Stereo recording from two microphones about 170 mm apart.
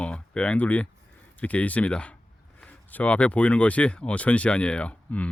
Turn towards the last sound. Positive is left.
turn(degrees=10)  # may be behind; listen again after turning